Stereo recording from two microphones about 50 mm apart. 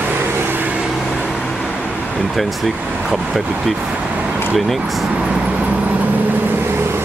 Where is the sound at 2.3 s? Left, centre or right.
Centre.